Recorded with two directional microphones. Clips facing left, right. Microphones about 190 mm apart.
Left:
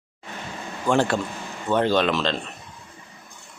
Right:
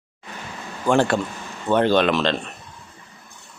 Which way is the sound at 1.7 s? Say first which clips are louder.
Right 3 dB; 60° right (ahead or behind).